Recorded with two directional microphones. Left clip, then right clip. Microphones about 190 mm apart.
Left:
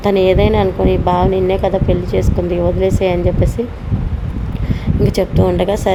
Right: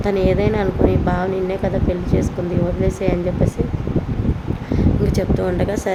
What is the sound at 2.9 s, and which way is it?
Speech, 25° left (ahead or behind).